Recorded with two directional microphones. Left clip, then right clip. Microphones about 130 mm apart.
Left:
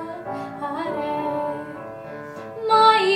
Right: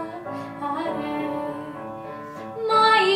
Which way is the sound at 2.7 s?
Centre (ahead or behind).